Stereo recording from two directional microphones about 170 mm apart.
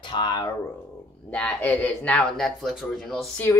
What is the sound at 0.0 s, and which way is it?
Speech, 25° left (ahead or behind).